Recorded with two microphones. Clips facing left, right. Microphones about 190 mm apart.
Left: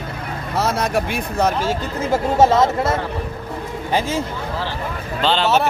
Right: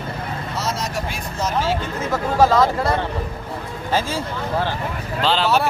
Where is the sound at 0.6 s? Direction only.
55° left (ahead or behind).